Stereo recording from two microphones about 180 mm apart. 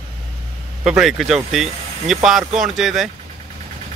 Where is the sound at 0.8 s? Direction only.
Centre (ahead or behind).